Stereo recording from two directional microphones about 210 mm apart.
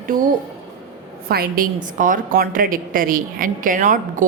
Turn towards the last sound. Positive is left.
turn(degrees=-40)  # may be behind; listen again after turning